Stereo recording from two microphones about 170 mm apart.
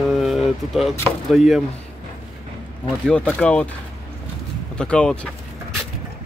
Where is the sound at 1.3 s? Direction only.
Centre (ahead or behind).